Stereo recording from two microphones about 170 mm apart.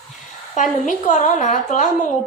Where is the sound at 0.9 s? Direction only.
50° left (ahead or behind).